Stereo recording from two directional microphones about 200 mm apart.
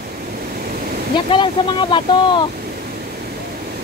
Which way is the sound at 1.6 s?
25° left (ahead or behind).